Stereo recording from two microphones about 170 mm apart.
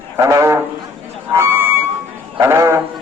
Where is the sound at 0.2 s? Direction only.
20° right (ahead or behind).